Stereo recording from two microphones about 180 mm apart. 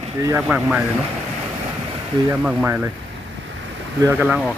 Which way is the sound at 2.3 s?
10° right (ahead or behind).